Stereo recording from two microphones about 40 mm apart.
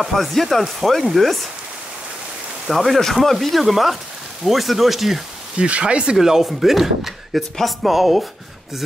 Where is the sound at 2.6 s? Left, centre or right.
Centre.